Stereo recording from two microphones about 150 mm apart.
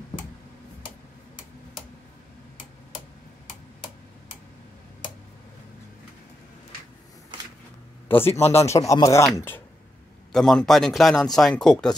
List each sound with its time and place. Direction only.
8.1 s speech: 15° left (ahead or behind)
10.3 s speech: 5° left (ahead or behind)